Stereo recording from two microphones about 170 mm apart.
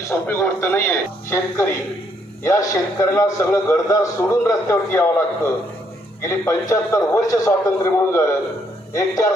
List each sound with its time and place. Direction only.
0.3 s a man's voice: 10° left (ahead or behind)
6.2 s a man's voice: 15° left (ahead or behind)